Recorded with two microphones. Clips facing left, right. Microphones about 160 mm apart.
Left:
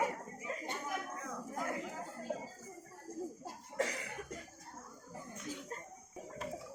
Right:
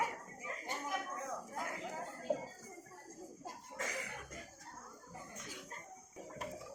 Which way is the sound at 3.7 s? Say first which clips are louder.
Left 7 dB; 35° left (ahead or behind).